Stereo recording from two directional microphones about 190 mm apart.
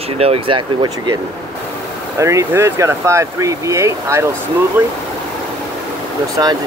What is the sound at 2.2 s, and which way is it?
Speech, 15° right (ahead or behind).